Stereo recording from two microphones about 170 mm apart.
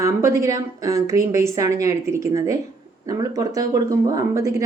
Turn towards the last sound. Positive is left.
turn(degrees=-15)  # may be behind; listen again after turning